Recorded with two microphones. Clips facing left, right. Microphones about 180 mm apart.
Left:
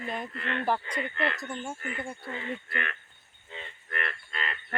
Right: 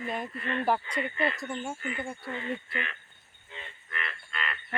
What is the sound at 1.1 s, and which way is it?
Speech, 70° left (ahead or behind).